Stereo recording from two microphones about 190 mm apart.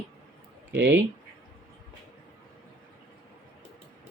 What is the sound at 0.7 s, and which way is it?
Speech, 65° right (ahead or behind).